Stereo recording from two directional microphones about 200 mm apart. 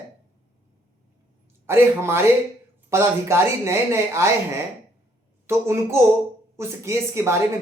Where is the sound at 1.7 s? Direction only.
10° right (ahead or behind).